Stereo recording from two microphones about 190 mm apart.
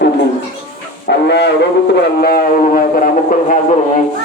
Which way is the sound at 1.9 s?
55° left (ahead or behind).